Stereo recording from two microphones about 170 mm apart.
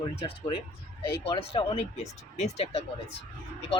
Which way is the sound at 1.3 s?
35° left (ahead or behind).